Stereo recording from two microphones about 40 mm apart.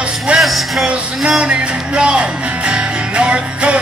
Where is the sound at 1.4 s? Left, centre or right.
Right.